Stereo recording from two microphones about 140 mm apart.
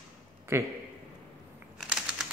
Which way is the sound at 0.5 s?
20° right (ahead or behind).